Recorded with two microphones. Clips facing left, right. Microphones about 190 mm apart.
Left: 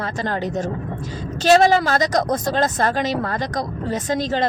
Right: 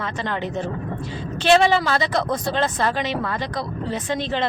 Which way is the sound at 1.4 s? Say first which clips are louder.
Left 2 dB; 40° left (ahead or behind).